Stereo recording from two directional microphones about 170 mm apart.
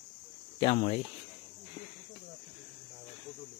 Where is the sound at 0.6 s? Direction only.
35° left (ahead or behind).